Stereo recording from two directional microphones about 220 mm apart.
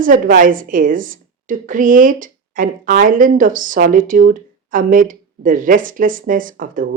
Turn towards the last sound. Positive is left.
turn(degrees=-40)  # may be behind; listen again after turning